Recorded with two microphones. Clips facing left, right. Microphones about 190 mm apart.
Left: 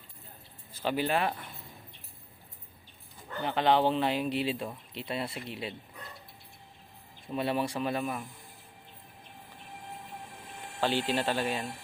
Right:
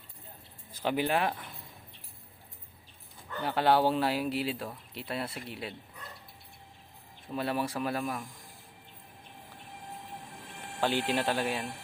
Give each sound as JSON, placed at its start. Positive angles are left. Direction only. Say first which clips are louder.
{"t": 0.7, "sound": "speech", "louder": "even", "side_deg": -15}
{"t": 3.4, "sound": "speech", "louder": "even", "side_deg": -5}
{"t": 7.3, "sound": "speech", "louder": "left 1 dB", "side_deg": 0}
{"t": 10.8, "sound": "speech", "louder": "even", "side_deg": -10}